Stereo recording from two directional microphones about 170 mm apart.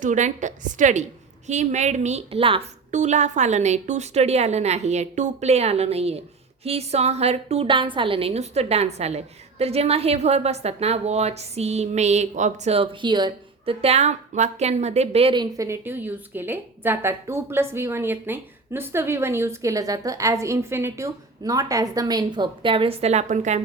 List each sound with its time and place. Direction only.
0.0 s a woman's voice: 45° right (ahead or behind)